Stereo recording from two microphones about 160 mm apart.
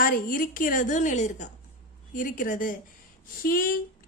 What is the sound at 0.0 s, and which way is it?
A woman's voice, 60° left (ahead or behind).